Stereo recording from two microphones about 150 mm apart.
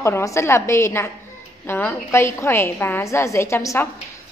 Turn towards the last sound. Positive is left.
turn(degrees=20)  # may be behind; listen again after turning